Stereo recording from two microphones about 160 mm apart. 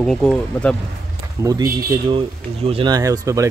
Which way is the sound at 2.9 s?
20° right (ahead or behind).